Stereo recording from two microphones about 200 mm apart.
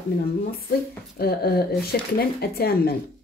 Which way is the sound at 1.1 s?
50° left (ahead or behind).